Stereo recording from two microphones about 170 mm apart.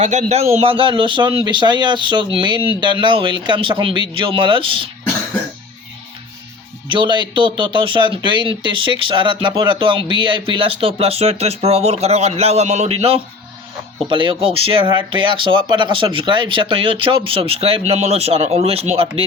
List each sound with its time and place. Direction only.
0.0 s speech: 40° right (ahead or behind)
6.9 s speech: 30° right (ahead or behind)